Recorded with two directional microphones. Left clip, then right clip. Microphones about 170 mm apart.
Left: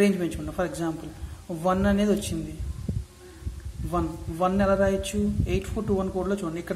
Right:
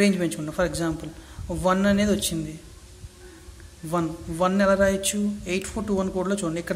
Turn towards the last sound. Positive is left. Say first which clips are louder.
# right 2 dB
turn(degrees=-10)  # may be behind; listen again after turning